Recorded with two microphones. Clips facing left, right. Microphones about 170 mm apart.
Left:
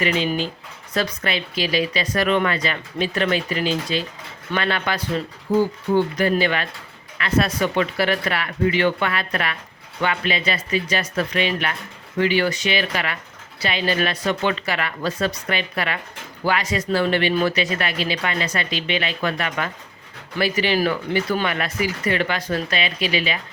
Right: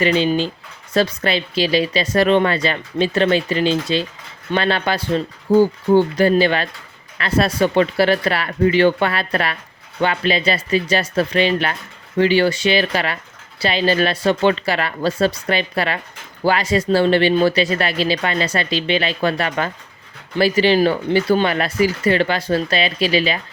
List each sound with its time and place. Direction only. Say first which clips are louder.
0.0 s speech: right 5 dB; 30° right (ahead or behind)